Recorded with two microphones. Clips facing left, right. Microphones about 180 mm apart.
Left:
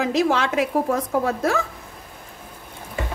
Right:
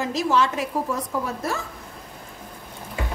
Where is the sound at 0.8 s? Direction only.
55° left (ahead or behind).